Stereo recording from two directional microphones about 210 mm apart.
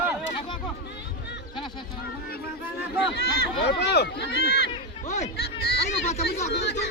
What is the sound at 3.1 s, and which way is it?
Speech, 50° left (ahead or behind).